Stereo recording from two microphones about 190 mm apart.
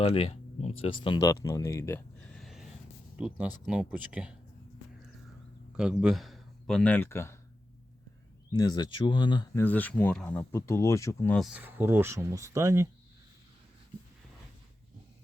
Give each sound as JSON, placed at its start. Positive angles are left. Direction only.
{"t": 0.0, "sound": "speech", "side_deg": 30}
{"t": 5.7, "sound": "speech", "side_deg": -5}
{"t": 8.5, "sound": "speech", "side_deg": 20}
{"t": 11.3, "sound": "speech", "side_deg": -5}